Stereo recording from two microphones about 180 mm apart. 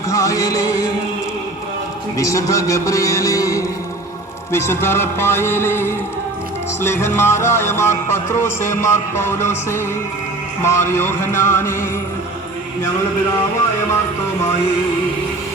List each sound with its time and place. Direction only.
0.1 s music: 20° left (ahead or behind)
2.1 s music: 20° left (ahead or behind)